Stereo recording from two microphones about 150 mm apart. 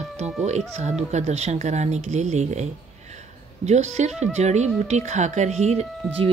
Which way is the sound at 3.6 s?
50° right (ahead or behind).